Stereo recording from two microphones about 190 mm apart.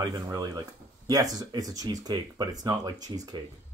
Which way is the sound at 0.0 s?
20° right (ahead or behind).